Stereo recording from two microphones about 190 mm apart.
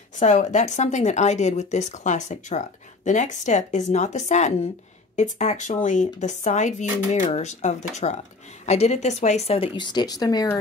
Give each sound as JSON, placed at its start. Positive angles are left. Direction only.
{"t": 0.1, "sound": "speech", "side_deg": 40}